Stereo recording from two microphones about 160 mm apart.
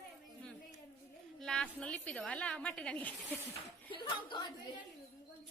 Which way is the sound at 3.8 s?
30° left (ahead or behind).